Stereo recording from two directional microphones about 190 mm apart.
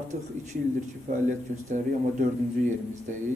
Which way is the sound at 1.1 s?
45° right (ahead or behind).